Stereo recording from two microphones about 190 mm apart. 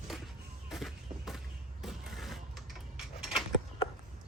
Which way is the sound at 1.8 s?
Centre (ahead or behind).